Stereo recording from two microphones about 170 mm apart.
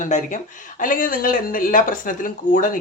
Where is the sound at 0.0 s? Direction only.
45° left (ahead or behind).